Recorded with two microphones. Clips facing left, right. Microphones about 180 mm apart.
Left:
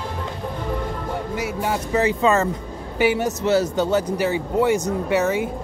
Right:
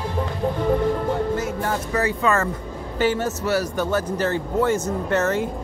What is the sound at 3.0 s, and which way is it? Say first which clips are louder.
A man's voice: left 2 dB; 15° left (ahead or behind).